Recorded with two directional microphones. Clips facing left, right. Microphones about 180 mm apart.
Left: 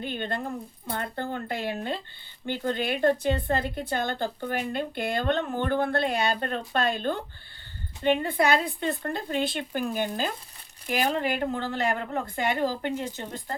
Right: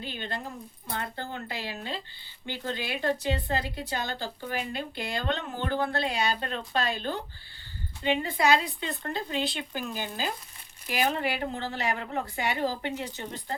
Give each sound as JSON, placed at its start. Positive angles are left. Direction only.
{"t": 0.0, "sound": "speech", "side_deg": 50}